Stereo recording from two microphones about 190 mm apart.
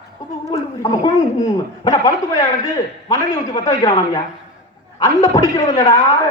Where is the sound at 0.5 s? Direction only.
20° left (ahead or behind).